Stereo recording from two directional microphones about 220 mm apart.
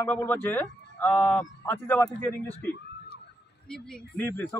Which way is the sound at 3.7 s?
5° left (ahead or behind).